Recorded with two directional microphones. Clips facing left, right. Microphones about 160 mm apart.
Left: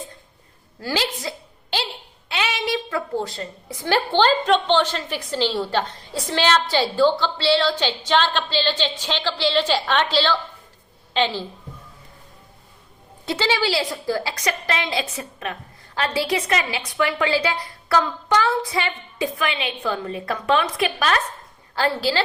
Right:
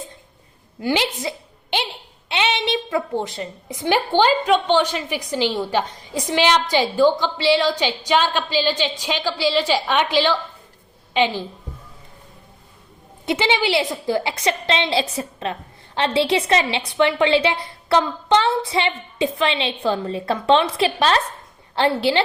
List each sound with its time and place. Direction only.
0.8 s a woman's voice: 20° right (ahead or behind)
1.2 s a sound: 20° right (ahead or behind)
2.3 s a woman's voice: 25° right (ahead or behind)
13.2 s a woman's voice: 20° right (ahead or behind)